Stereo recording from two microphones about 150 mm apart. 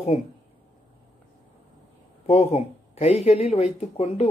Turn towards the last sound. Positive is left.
turn(degrees=45)  # may be behind; listen again after turning